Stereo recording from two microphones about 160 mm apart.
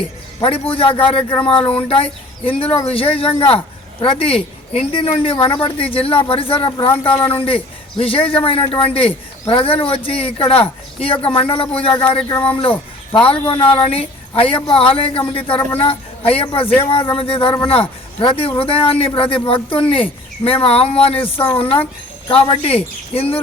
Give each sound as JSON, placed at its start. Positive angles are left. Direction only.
{"t": 0.4, "sound": "a man's voice", "side_deg": 35}
{"t": 11.9, "sound": "speech", "side_deg": 15}
{"t": 12.5, "sound": "a man's voice", "side_deg": 35}